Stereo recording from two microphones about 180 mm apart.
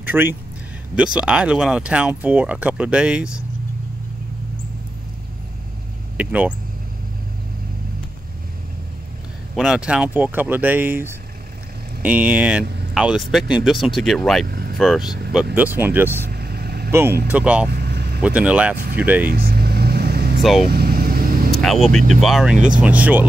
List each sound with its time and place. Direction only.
0.0 s a sound: 10° right (ahead or behind)
0.9 s speech: 5° right (ahead or behind)
6.1 s speech: 10° right (ahead or behind)
9.6 s speech: 5° right (ahead or behind)
14.4 s vehicle: 60° right (ahead or behind)
14.8 s speech: centre (ahead or behind)
15.5 s speech: 10° right (ahead or behind)
16.3 s vehicle: 60° right (ahead or behind)
16.9 s speech: 15° right (ahead or behind)
17.6 s vehicle: 60° right (ahead or behind)
18.2 s speech: 5° right (ahead or behind)
19.2 s vehicle: 55° right (ahead or behind)
22.2 s speech: centre (ahead or behind)